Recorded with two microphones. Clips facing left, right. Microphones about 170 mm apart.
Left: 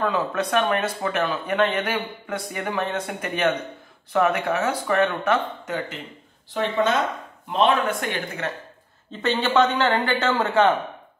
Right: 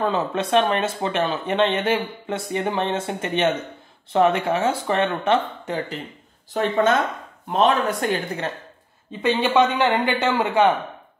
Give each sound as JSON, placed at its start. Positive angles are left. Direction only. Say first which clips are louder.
{"t": 0.0, "sound": "speech", "louder": "right 1 dB", "side_deg": -25}
{"t": 6.5, "sound": "speech", "louder": "right 3 dB", "side_deg": -50}
{"t": 9.2, "sound": "speech", "louder": "right 2 dB", "side_deg": -10}